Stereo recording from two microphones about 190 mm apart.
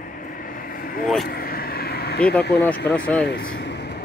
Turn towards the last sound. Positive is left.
turn(degrees=60)  # may be behind; listen again after turning